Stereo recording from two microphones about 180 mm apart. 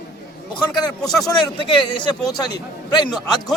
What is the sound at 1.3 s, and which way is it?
A man's voice, 25° left (ahead or behind).